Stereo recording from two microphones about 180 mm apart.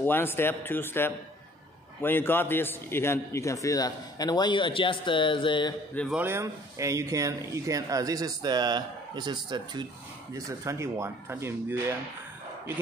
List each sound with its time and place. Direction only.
0.0 s a man's voice: 10° left (ahead or behind)
6.1 s speech: 15° right (ahead or behind)